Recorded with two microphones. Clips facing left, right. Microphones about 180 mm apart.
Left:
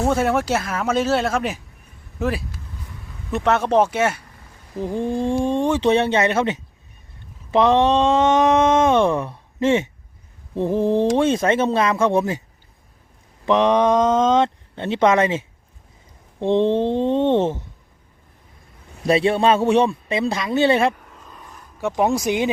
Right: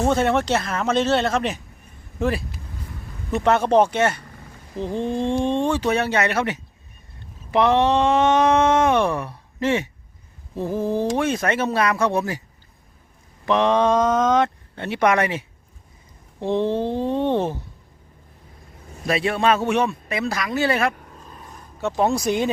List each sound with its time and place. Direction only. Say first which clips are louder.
0.0 s speech: even; 5° left (ahead or behind); by 12.4 s 25° left (ahead or behind)
13.4 s speech: left 2 dB; 20° left (ahead or behind)
19.0 s speech: left 4 dB; 30° left (ahead or behind)
20.9 s vehicle: right 2 dB; 40° right (ahead or behind)
21.8 s speech: left 1 dB; 15° left (ahead or behind)